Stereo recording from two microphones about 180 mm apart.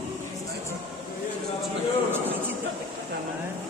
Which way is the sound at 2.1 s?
10° right (ahead or behind).